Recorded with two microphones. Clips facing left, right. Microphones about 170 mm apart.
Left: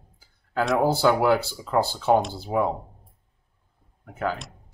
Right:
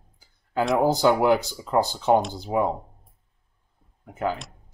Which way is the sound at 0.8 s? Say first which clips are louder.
Right 1 dB; 15° right (ahead or behind).